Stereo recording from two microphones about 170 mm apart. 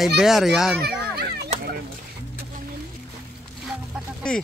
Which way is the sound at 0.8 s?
70° right (ahead or behind).